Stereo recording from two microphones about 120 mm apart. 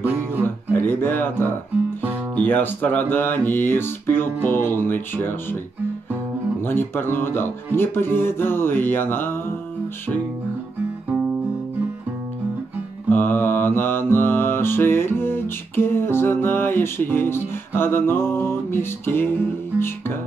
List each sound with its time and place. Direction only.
0.0 s music: 20° left (ahead or behind)
2.4 s speech: 15° left (ahead or behind)
6.6 s speech: 20° left (ahead or behind)
13.1 s mantra: 15° left (ahead or behind)